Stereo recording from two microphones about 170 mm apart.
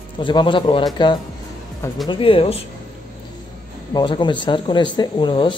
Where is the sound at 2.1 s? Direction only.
30° left (ahead or behind).